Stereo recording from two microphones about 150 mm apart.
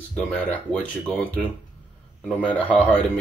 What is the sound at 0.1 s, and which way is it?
Speech, 10° left (ahead or behind).